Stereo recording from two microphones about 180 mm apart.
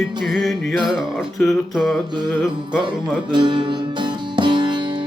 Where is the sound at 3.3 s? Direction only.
25° right (ahead or behind).